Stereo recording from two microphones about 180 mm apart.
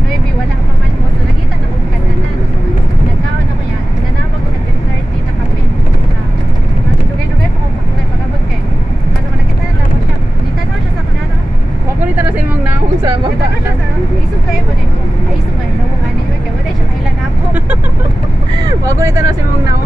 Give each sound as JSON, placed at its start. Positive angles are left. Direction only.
{"t": 18.6, "sound": "vehicle", "side_deg": -20}